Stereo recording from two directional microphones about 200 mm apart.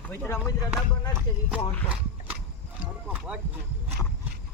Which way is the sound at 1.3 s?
20° left (ahead or behind).